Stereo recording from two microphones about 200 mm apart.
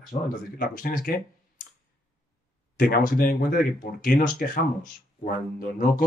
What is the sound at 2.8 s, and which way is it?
Speech, 45° left (ahead or behind).